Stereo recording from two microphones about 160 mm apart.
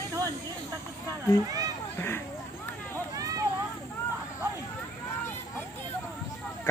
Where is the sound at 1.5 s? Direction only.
20° right (ahead or behind).